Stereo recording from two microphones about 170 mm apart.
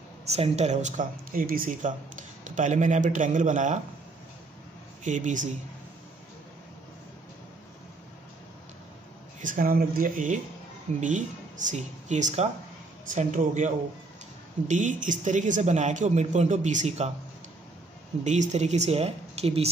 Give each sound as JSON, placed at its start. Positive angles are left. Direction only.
{"t": 0.3, "sound": "speech", "side_deg": -40}
{"t": 5.0, "sound": "speech", "side_deg": -45}
{"t": 9.4, "sound": "speech", "side_deg": -55}
{"t": 18.2, "sound": "speech", "side_deg": -45}